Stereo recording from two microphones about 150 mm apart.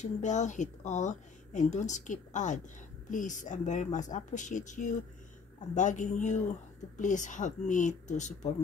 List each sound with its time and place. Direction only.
0.0 s a woman's voice: 55° left (ahead or behind)